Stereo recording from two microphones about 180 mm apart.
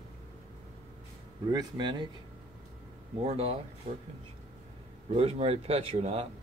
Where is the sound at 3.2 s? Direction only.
35° right (ahead or behind).